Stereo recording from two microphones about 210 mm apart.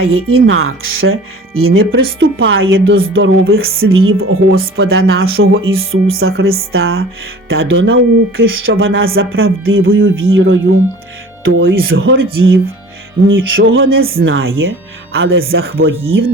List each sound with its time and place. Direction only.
0.0 s speech: 80° right
3.9 s speech: 85° right
6.1 s speech: 50° right (ahead or behind)
6.7 s speech: 75° right (ahead or behind)
14.0 s speech: 45° right (ahead or behind)
14.3 s speech: 75° right (ahead or behind)